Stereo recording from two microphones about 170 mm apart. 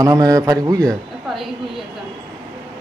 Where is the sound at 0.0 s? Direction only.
20° right (ahead or behind).